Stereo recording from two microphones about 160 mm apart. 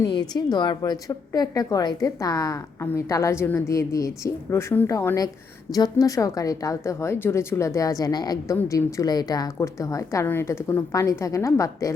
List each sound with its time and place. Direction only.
0.2 s a woman's voice: 25° left (ahead or behind)